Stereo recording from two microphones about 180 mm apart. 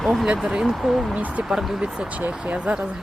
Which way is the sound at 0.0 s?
Centre (ahead or behind).